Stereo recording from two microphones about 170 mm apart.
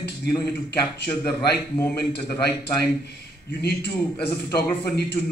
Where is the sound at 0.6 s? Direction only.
75° left (ahead or behind).